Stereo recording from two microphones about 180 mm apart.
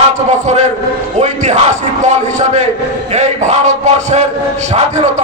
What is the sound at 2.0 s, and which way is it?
Speech, 40° right (ahead or behind).